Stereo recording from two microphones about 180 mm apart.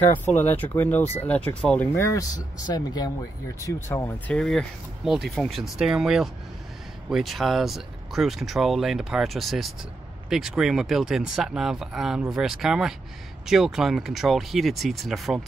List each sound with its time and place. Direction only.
0.1 s speech: 10° left (ahead or behind)
4.3 s speech: 5° left (ahead or behind)